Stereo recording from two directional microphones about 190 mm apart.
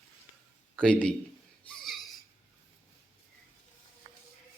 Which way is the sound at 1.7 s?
Centre (ahead or behind).